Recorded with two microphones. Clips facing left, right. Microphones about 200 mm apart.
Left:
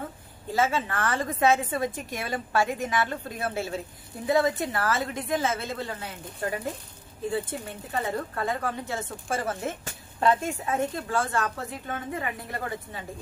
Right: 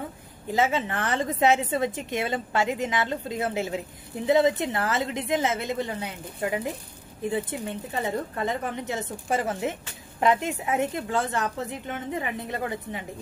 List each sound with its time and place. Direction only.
0.5 s a woman's voice: 20° right (ahead or behind)